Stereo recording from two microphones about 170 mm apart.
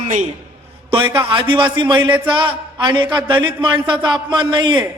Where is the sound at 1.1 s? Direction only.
30° right (ahead or behind).